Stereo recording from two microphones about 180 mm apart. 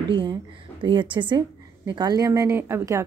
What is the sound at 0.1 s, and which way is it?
A woman's voice, 25° right (ahead or behind).